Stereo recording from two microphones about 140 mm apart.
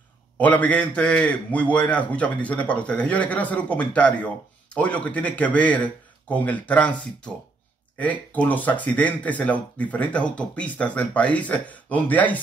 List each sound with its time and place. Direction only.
0.4 s a man's voice: 10° left (ahead or behind)
8.0 s a man's voice: 10° left (ahead or behind)